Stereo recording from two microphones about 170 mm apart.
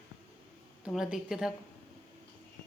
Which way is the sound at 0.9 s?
5° right (ahead or behind).